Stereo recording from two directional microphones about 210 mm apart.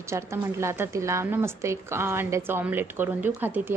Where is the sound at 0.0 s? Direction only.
15° right (ahead or behind).